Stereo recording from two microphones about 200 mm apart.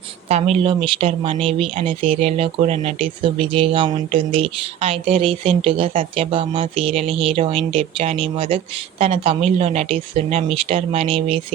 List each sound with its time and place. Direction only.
0.3 s speech: 30° right (ahead or behind)